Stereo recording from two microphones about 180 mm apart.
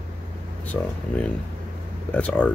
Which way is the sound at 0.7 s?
5° left (ahead or behind).